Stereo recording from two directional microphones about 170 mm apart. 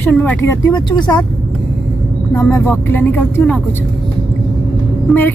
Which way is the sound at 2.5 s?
15° left (ahead or behind).